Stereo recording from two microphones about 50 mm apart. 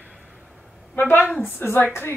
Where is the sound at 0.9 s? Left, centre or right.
Left.